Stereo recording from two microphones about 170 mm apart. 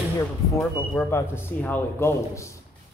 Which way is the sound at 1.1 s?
10° left (ahead or behind).